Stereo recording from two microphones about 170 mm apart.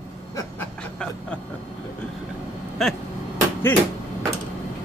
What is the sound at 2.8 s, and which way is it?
Speech, centre (ahead or behind).